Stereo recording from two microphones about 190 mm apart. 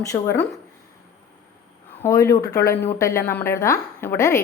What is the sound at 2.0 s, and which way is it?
A woman's voice, 15° left (ahead or behind).